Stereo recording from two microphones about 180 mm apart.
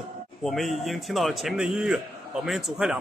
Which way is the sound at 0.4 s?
Centre (ahead or behind).